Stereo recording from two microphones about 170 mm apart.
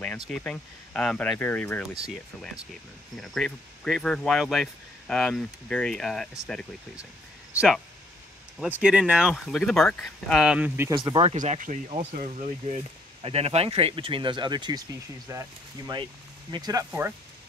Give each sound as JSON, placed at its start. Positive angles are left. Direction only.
{"t": 0.0, "sound": "speech", "side_deg": 5}
{"t": 8.5, "sound": "speech", "side_deg": -5}
{"t": 10.9, "sound": "speech", "side_deg": -25}
{"t": 11.3, "sound": "speech", "side_deg": -45}